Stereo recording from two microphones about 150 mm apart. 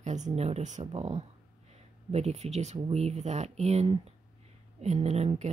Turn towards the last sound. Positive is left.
turn(degrees=-50)  # may be behind; listen again after turning